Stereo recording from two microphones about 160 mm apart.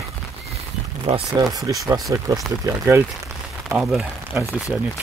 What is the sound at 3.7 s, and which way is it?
Speech, 5° right (ahead or behind).